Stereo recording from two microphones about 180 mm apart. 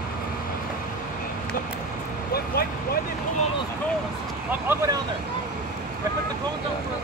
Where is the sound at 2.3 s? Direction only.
60° left (ahead or behind).